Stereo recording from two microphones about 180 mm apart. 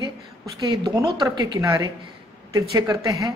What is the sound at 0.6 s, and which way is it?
Speech, 20° right (ahead or behind).